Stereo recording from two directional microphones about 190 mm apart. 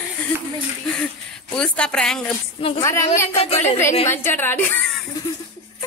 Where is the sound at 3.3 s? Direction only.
35° left (ahead or behind).